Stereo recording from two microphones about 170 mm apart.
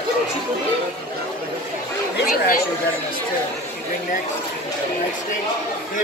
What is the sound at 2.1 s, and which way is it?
Speech, 65° left (ahead or behind).